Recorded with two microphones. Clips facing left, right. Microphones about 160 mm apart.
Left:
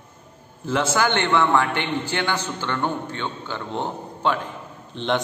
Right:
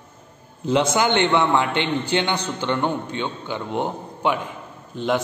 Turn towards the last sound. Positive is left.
turn(degrees=-5)  # may be behind; listen again after turning